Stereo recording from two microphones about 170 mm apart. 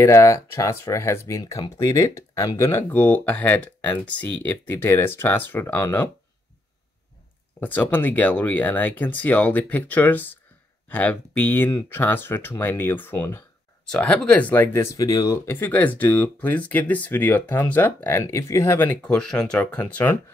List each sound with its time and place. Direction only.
0.0 s speech: 15° left (ahead or behind)
7.6 s speech: 10° left (ahead or behind)